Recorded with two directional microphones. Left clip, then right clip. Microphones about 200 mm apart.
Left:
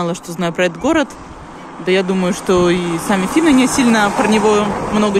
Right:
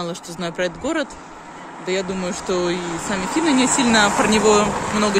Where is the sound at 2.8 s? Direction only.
50° left (ahead or behind).